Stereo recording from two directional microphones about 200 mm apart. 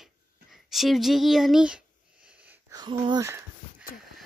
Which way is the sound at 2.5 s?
20° right (ahead or behind).